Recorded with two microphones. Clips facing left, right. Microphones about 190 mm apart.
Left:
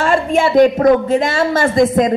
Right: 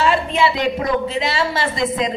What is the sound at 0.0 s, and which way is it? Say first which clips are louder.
Speech: left 3 dB; 45° left (ahead or behind).